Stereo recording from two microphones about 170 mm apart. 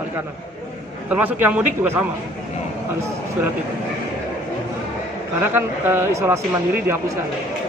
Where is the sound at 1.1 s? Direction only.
10° right (ahead or behind).